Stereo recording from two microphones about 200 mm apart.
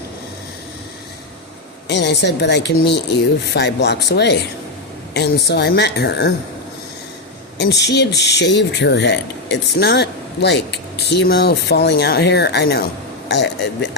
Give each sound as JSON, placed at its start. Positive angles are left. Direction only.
{"t": 1.9, "sound": "speech", "side_deg": 60}
{"t": 7.6, "sound": "speech", "side_deg": 60}